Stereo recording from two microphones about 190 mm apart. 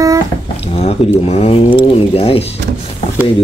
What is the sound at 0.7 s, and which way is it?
Speech, 35° left (ahead or behind).